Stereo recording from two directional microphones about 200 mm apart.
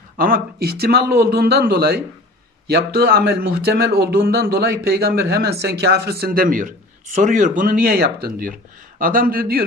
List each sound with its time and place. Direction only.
0.2 s speech: 50° right (ahead or behind)